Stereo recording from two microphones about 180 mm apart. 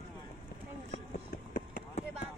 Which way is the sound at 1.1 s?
50° left (ahead or behind).